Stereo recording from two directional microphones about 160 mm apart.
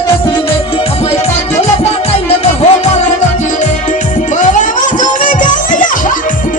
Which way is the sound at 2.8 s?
45° left (ahead or behind).